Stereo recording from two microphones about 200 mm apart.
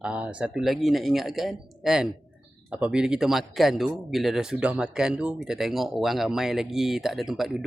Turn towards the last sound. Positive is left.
turn(degrees=0)  # may be behind; listen again after turning